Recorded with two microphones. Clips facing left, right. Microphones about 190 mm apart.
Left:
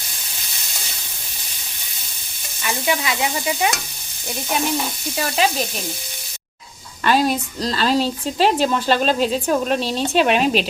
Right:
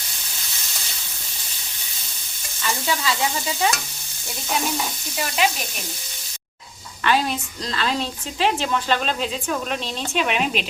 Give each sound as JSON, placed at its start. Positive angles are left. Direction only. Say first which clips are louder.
{"t": 2.6, "sound": "stir", "louder": "left 3 dB", "side_deg": 15}
{"t": 7.0, "sound": "a woman's voice", "louder": "left 4 dB", "side_deg": 40}